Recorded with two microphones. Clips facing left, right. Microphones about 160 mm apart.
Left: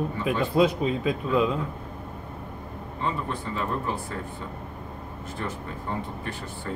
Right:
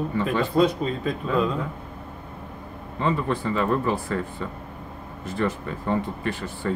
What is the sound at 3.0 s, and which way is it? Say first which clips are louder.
Speech: right 6 dB; 90° right.